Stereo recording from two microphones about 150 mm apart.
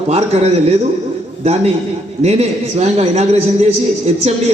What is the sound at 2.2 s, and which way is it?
A man's voice, 45° right (ahead or behind).